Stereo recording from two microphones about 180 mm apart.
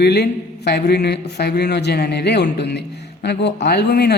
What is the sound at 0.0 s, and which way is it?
Speech, 65° left (ahead or behind).